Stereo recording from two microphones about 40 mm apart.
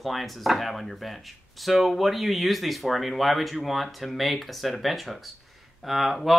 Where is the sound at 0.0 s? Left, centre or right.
Centre.